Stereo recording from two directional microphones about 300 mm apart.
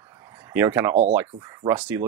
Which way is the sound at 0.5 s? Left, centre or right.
Centre.